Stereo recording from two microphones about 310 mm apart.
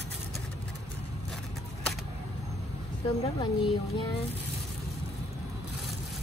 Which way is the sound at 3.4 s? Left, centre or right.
Centre.